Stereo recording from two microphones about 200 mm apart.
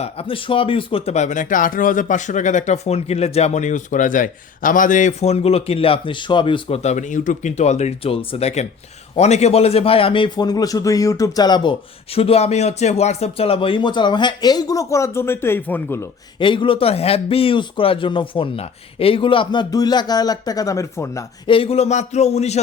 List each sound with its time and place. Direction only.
0.0 s a man's voice: 30° left (ahead or behind); by 16.0 s 10° left (ahead or behind)
16.4 s a man's voice: 25° left (ahead or behind)
21.5 s speech: 30° left (ahead or behind)